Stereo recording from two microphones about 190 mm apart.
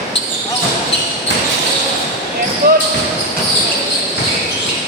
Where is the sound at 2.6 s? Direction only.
50° right (ahead or behind).